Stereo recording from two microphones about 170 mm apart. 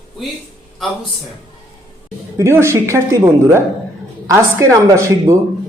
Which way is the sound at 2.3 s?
15° right (ahead or behind).